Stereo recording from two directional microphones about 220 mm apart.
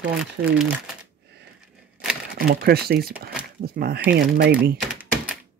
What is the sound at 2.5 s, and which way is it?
Speech, 45° right (ahead or behind).